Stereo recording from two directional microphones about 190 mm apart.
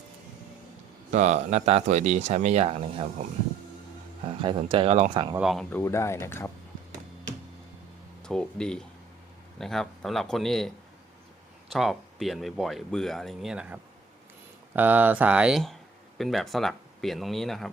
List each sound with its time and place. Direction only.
1.1 s speech: 35° right (ahead or behind)
4.3 s speech: 25° right (ahead or behind)
5.4 s speech: centre (ahead or behind)
5.7 s speech: 15° left (ahead or behind)
8.2 s speech: 5° left (ahead or behind)
11.7 s speech: centre (ahead or behind)